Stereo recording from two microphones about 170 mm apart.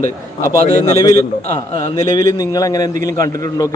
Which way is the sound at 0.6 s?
40° left (ahead or behind).